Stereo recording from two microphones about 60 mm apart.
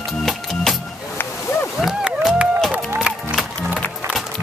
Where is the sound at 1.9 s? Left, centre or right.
Centre.